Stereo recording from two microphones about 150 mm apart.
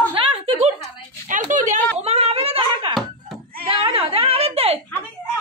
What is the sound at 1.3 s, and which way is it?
Speech, 60° right (ahead or behind).